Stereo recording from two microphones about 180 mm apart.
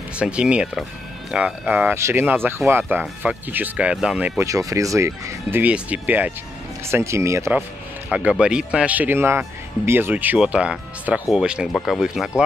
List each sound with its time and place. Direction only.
0.2 s speech: 5° right (ahead or behind)
4.4 s speech: 20° right (ahead or behind); by 12.3 s centre (ahead or behind)